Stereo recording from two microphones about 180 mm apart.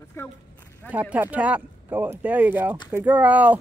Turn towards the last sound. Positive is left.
turn(degrees=-10)  # may be behind; listen again after turning